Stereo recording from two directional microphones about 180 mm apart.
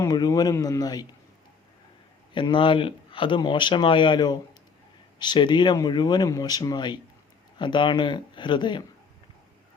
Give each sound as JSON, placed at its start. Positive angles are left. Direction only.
{"t": 0.0, "sound": "speech", "side_deg": 20}
{"t": 2.3, "sound": "speech", "side_deg": 25}